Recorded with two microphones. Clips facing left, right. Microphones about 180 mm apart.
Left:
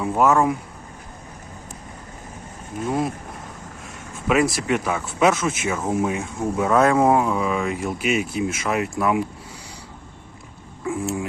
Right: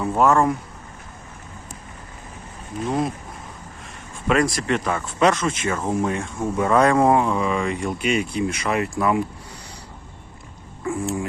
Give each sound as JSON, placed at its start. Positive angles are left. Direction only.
{"t": 0.0, "sound": "speech", "side_deg": 0}
{"t": 3.8, "sound": "a sound", "side_deg": 5}
{"t": 4.5, "sound": "speech", "side_deg": 5}
{"t": 10.8, "sound": "speech", "side_deg": 0}